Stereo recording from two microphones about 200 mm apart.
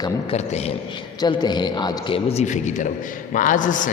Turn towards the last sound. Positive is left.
turn(degrees=40)  # may be behind; listen again after turning